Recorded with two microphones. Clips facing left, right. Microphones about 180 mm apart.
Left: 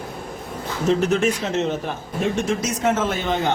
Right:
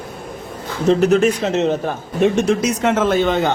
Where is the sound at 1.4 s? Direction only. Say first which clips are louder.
Right 5 dB; 90° right.